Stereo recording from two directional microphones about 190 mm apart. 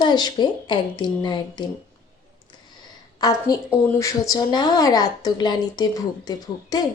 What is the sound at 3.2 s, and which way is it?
Speech, 20° left (ahead or behind).